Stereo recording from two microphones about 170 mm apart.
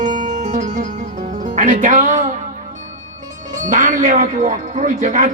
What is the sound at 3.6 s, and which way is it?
A man's voice, 45° right (ahead or behind).